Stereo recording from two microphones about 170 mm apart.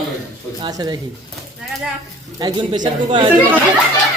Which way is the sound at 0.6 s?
25° right (ahead or behind).